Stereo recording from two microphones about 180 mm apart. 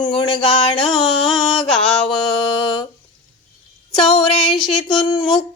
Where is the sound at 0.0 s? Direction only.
25° left (ahead or behind).